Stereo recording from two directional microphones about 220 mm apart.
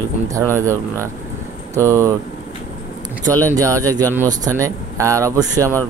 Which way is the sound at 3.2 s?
15° right (ahead or behind).